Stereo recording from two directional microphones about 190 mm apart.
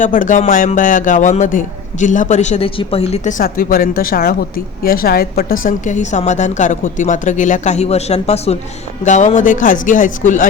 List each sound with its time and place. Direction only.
0.0 s a man's voice: 45° left (ahead or behind)